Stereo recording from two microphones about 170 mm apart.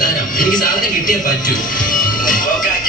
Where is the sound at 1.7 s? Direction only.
50° left (ahead or behind).